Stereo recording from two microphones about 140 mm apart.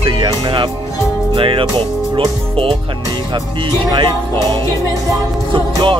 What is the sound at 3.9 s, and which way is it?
Speech, 30° right (ahead or behind).